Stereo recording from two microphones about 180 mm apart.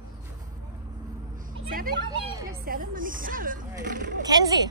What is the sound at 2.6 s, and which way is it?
Speech, 50° right (ahead or behind).